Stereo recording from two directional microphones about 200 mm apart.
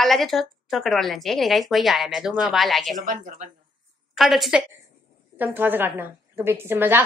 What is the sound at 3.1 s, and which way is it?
Speech, 40° right (ahead or behind).